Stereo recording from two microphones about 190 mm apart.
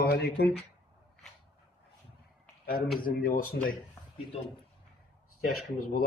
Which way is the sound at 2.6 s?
50° left (ahead or behind).